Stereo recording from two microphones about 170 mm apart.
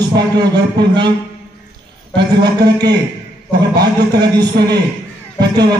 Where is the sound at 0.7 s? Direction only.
25° right (ahead or behind).